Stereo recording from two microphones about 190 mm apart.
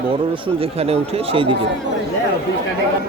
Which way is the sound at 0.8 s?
30° right (ahead or behind).